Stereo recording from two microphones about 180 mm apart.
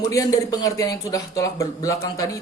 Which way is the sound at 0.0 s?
20° left (ahead or behind).